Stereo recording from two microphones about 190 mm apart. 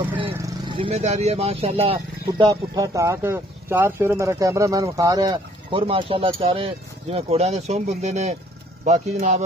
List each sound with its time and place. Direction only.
0.4 s speech: 25° right (ahead or behind)